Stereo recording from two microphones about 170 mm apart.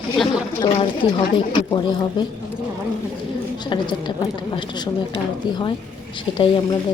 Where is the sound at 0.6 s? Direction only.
25° left (ahead or behind).